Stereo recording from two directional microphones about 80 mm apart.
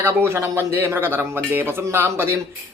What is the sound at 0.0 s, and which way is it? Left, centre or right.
A man's voice, right.